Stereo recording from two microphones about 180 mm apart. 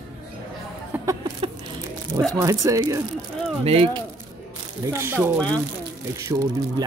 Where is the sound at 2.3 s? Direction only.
15° right (ahead or behind).